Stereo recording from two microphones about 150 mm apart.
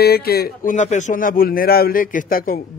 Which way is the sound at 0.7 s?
55° left (ahead or behind).